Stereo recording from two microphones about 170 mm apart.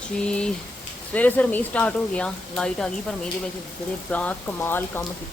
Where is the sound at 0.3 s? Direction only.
5° left (ahead or behind).